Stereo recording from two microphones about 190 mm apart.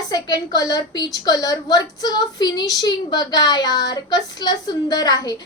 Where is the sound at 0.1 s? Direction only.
20° left (ahead or behind).